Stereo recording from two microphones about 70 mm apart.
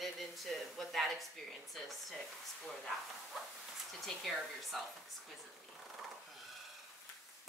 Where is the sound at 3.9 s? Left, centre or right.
Centre.